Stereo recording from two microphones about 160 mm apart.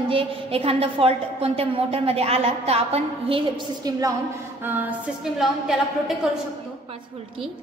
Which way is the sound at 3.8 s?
20° right (ahead or behind).